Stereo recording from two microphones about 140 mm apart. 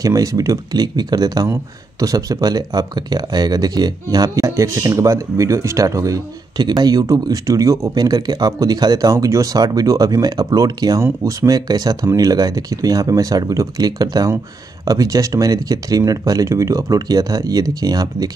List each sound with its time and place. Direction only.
0.0 s speech: 25° right (ahead or behind)